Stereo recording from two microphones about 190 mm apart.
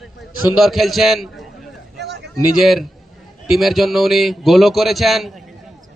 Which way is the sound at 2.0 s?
60° right (ahead or behind).